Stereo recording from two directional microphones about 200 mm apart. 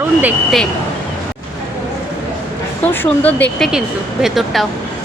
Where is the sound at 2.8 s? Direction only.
10° left (ahead or behind).